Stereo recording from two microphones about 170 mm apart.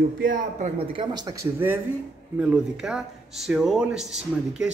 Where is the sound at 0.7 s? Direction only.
30° right (ahead or behind); by 4.7 s 5° right (ahead or behind).